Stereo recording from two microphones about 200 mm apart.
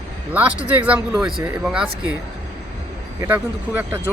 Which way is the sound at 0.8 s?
5° right (ahead or behind).